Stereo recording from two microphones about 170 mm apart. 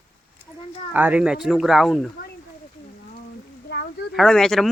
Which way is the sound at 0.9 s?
10° right (ahead or behind).